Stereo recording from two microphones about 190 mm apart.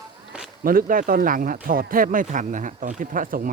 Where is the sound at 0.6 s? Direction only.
50° right (ahead or behind).